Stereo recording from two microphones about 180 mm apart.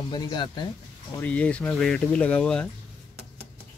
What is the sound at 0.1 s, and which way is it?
Speech, 25° left (ahead or behind).